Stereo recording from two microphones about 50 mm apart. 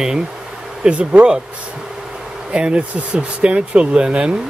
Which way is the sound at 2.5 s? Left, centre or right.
Right.